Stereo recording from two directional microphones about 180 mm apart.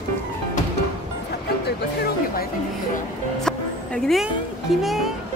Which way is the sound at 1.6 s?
60° left (ahead or behind).